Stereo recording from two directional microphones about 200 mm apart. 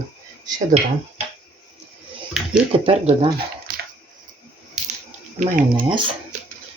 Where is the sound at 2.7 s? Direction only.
30° right (ahead or behind).